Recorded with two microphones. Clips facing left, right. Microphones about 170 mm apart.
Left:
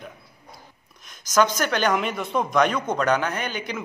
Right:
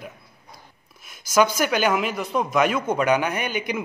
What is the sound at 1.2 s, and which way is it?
Speech, 10° right (ahead or behind).